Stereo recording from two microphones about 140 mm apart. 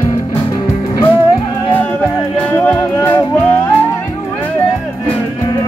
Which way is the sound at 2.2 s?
10° left (ahead or behind).